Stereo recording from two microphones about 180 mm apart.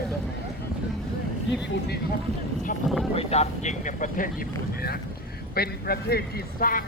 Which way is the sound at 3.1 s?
35° left (ahead or behind).